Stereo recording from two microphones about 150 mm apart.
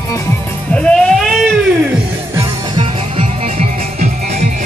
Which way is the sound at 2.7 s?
40° right (ahead or behind).